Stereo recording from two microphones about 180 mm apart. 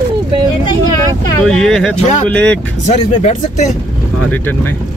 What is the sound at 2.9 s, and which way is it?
Speech, 40° left (ahead or behind).